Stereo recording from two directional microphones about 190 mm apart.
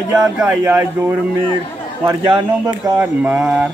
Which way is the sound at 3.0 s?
10° right (ahead or behind).